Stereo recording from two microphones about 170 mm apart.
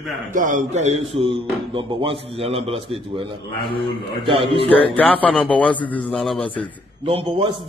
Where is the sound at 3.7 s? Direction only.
30° left (ahead or behind).